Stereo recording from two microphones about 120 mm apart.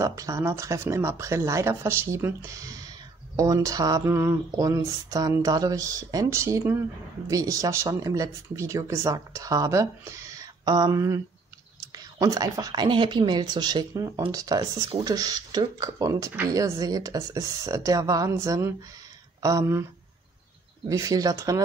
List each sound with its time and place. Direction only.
0.0 s speech: 25° right (ahead or behind)
20.9 s speech: 30° right (ahead or behind)